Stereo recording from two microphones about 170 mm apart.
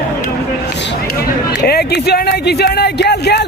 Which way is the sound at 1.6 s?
70° left (ahead or behind).